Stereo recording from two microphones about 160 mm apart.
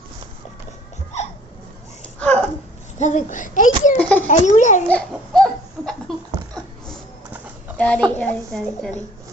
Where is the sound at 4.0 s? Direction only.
10° left (ahead or behind).